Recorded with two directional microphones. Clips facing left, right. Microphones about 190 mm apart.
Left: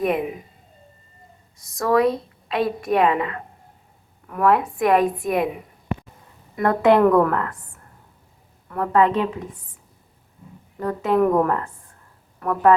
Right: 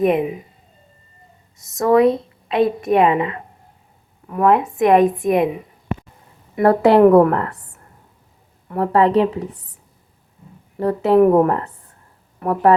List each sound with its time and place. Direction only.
0.0 s a woman's voice: 25° right (ahead or behind)
1.5 s a woman's voice: 20° right (ahead or behind)
6.6 s a woman's voice: 35° right (ahead or behind)
8.6 s a woman's voice: 30° right (ahead or behind)
10.8 s a woman's voice: 35° right (ahead or behind)